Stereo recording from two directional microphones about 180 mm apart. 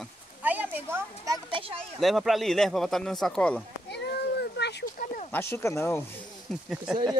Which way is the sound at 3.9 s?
65° left (ahead or behind).